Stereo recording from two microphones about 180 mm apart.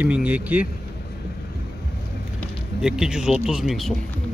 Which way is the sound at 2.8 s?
5° right (ahead or behind).